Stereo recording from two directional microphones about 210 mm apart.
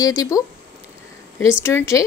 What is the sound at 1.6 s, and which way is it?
Speech, 15° left (ahead or behind).